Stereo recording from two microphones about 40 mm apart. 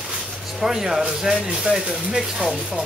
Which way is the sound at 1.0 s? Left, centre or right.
Right.